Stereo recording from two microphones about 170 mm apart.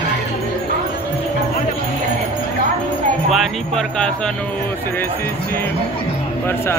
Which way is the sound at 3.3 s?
Centre (ahead or behind).